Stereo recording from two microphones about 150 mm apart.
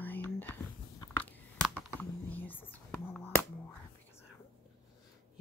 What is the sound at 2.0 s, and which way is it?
Whispering, 10° left (ahead or behind).